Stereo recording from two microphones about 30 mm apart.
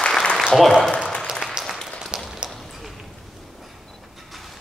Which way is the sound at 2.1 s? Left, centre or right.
Right.